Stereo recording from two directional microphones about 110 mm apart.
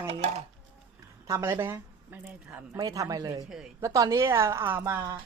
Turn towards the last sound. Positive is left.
turn(degrees=-20)  # may be behind; listen again after turning